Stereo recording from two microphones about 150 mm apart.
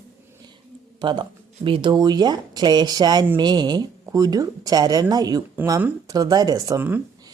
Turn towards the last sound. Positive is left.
turn(degrees=-20)  # may be behind; listen again after turning